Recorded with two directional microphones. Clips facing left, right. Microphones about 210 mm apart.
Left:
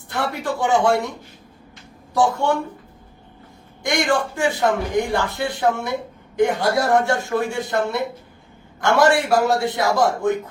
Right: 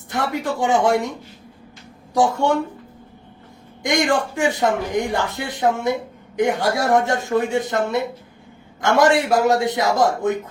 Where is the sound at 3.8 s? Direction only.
15° right (ahead or behind).